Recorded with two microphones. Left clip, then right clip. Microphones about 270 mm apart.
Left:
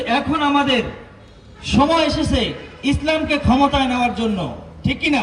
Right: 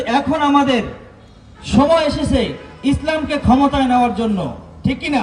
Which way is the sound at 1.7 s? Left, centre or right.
Right.